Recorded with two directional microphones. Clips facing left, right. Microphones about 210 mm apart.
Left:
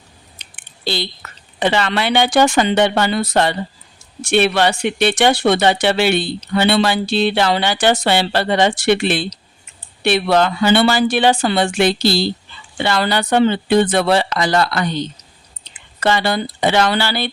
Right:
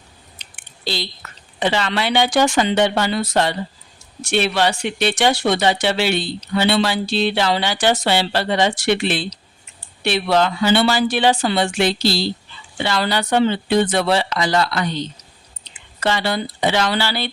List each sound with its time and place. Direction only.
1.5 s speech: 60° left (ahead or behind)